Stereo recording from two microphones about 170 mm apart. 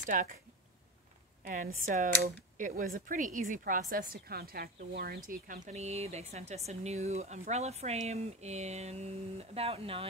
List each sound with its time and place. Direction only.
0.0 s speech: 50° right (ahead or behind)
1.5 s speech: 50° right (ahead or behind)